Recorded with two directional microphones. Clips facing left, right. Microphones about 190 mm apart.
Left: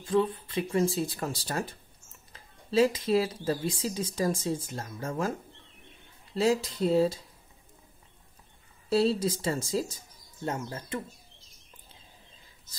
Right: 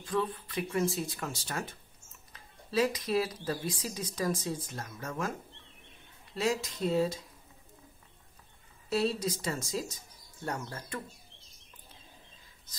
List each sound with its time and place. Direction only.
0.0 s speech: 25° left (ahead or behind)
6.3 s speech: 30° left (ahead or behind)
8.8 s speech: 30° left (ahead or behind)